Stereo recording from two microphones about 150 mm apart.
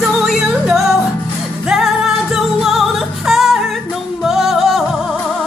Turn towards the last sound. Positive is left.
turn(degrees=0)  # may be behind; listen again after turning